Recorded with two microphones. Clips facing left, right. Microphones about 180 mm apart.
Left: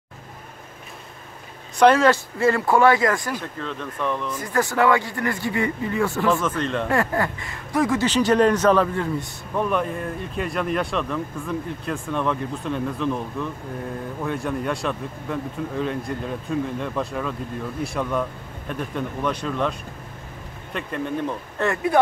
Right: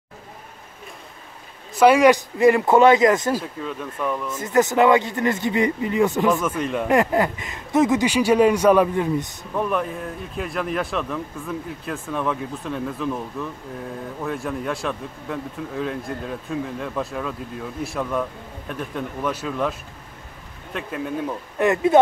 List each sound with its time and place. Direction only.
1.8 s speech: 10° right (ahead or behind)
3.3 s speech: 5° right (ahead or behind)
4.3 s speech: 20° right (ahead or behind)
9.6 s speech: centre (ahead or behind)
20.7 s speech: 5° right (ahead or behind)